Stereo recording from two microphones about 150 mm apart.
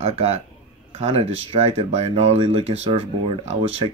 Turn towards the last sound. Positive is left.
turn(degrees=-40)  # may be behind; listen again after turning